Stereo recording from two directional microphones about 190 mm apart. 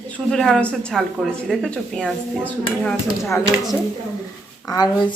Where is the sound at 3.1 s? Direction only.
15° left (ahead or behind).